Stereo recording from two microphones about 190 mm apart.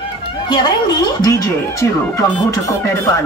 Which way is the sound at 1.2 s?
15° left (ahead or behind).